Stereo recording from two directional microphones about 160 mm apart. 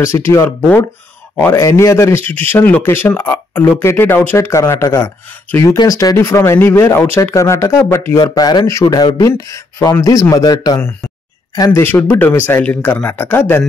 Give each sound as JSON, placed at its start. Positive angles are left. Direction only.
{"t": 0.0, "sound": "speech", "side_deg": 15}